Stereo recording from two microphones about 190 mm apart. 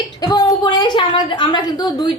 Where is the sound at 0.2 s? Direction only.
20° left (ahead or behind).